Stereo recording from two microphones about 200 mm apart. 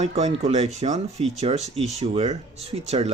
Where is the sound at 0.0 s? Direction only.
30° right (ahead or behind).